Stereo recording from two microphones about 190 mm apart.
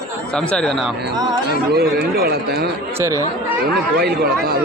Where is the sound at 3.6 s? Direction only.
55° right (ahead or behind).